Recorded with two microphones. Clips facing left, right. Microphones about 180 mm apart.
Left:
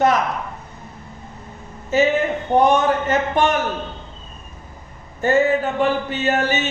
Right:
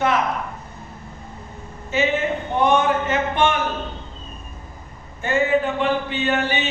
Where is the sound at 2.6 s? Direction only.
40° left (ahead or behind).